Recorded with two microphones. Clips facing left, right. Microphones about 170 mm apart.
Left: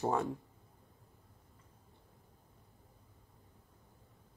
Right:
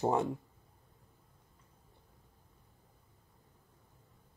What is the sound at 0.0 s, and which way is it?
Speech, 20° right (ahead or behind).